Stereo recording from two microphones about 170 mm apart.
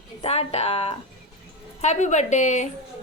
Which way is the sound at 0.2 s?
35° left (ahead or behind).